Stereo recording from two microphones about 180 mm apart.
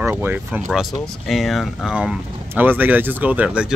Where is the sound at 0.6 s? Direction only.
Centre (ahead or behind).